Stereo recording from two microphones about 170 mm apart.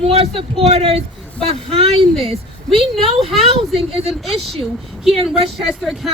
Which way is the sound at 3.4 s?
35° right (ahead or behind).